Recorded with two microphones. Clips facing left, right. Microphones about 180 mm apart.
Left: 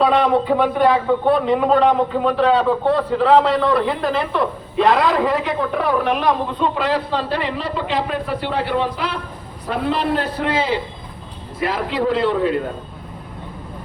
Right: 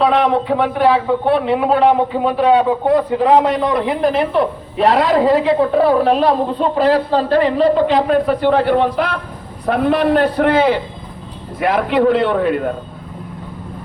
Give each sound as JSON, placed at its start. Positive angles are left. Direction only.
{"t": 0.0, "sound": "a man's voice", "side_deg": 0}